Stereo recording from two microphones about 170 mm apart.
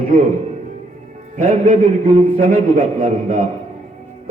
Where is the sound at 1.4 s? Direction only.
45° right (ahead or behind).